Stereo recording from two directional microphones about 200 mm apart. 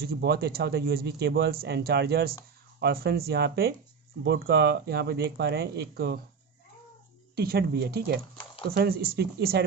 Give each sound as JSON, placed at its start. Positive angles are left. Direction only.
{"t": 0.0, "sound": "speech", "side_deg": -50}
{"t": 7.3, "sound": "speech", "side_deg": -50}